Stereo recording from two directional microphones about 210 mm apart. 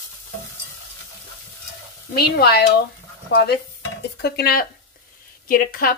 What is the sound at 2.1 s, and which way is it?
Frying, 50° left (ahead or behind).